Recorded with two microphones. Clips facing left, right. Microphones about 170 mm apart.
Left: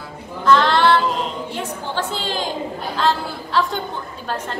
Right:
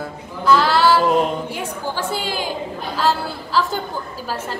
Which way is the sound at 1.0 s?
55° right (ahead or behind).